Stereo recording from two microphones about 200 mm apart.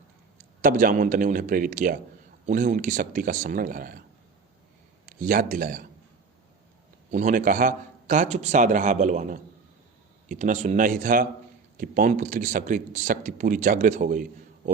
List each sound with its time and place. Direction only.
0.6 s speech: 40° right (ahead or behind)
5.0 s speech: 45° right (ahead or behind)
7.1 s speech: 40° right (ahead or behind)